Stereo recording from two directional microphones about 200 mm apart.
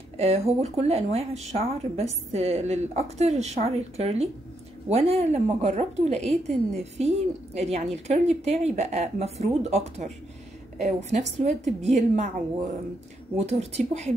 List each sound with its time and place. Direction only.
0.2 s speech: 30° right (ahead or behind)
13.4 s speech: 35° right (ahead or behind)